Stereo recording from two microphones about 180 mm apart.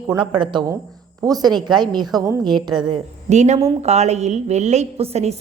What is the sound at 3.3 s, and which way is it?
A woman's voice, 40° right (ahead or behind).